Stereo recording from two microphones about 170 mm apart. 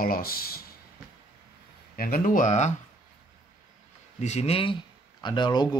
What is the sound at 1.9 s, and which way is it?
Speech, 60° left (ahead or behind).